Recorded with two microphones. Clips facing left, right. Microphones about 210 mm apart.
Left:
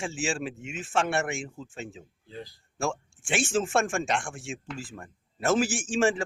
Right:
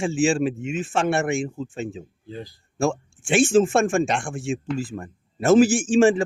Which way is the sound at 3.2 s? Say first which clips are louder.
Right 10 dB; 25° right (ahead or behind).